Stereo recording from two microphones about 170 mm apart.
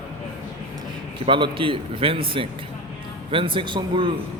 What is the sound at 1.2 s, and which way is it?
A man's voice, 30° right (ahead or behind).